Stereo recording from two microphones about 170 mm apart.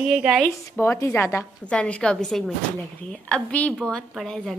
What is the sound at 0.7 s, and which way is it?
A woman's voice, 15° left (ahead or behind).